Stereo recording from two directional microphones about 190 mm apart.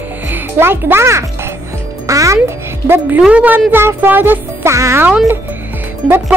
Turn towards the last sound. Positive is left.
turn(degrees=0)  # may be behind; listen again after turning